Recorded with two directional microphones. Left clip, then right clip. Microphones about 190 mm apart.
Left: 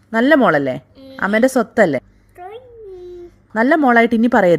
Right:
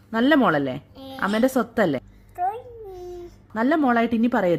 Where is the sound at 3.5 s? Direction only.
40° left (ahead or behind).